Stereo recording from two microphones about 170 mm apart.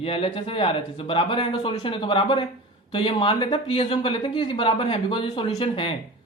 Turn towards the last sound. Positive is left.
turn(degrees=30)  # may be behind; listen again after turning